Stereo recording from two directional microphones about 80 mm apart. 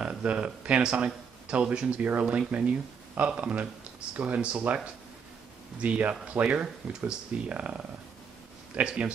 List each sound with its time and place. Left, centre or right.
0.0 s speech: centre